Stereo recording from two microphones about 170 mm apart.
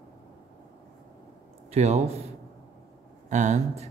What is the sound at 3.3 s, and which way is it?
Speech, 45° right (ahead or behind).